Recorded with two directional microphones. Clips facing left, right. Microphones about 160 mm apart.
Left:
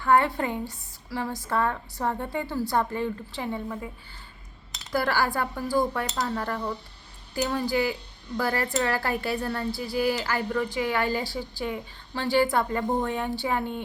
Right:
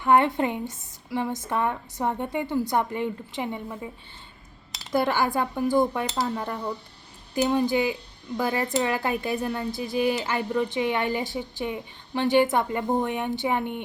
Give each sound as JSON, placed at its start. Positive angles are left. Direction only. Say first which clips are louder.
{"t": 0.0, "sound": "speech", "louder": "right 2 dB", "side_deg": -20}
{"t": 4.9, "sound": "speech", "louder": "right 2 dB", "side_deg": -20}